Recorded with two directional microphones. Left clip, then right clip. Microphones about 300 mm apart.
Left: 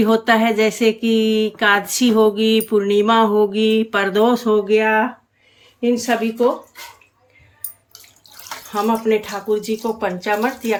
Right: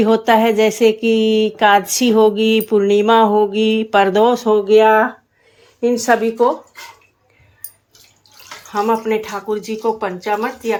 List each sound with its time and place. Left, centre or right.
0.0 s speech: centre
8.7 s speech: centre